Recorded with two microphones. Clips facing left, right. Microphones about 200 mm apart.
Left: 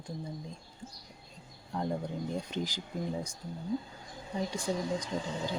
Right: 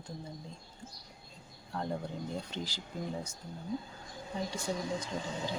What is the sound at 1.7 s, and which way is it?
Speech, 15° left (ahead or behind).